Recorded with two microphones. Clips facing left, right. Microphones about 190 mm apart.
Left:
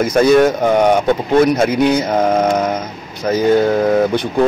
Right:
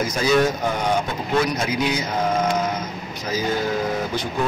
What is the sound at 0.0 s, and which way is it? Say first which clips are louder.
Speech: left 8 dB; 55° left (ahead or behind).